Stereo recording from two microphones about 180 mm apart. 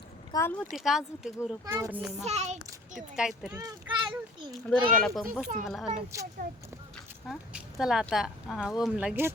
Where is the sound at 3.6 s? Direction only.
25° right (ahead or behind).